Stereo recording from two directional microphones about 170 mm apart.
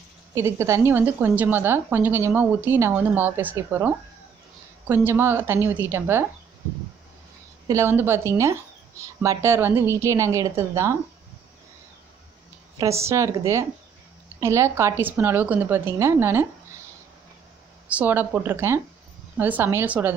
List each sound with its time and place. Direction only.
0.3 s a woman's voice: 15° right (ahead or behind)
7.6 s a woman's voice: 15° right (ahead or behind)
12.7 s a woman's voice: 15° right (ahead or behind)
17.8 s a woman's voice: 10° right (ahead or behind)